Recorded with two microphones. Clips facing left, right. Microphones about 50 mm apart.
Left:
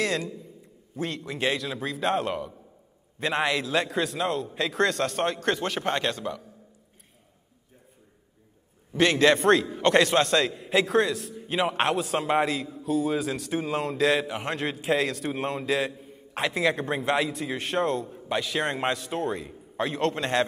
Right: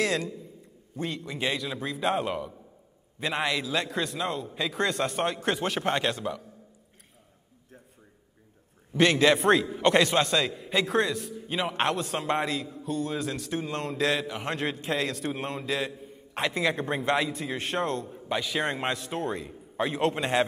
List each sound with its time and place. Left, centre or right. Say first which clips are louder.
0.0 s a sound: even; centre
0.9 s a man's voice: left 2 dB; centre
8.9 s a man's voice: left 1 dB; centre
9.3 s a man's voice: left 2 dB; centre